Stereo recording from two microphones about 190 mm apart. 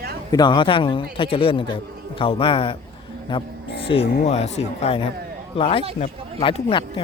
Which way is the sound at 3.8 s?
30° left (ahead or behind).